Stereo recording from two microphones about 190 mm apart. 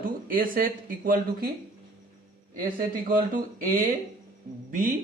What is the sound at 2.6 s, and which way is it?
Speech, 45° right (ahead or behind).